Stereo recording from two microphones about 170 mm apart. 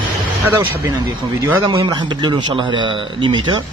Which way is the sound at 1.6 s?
30° right (ahead or behind).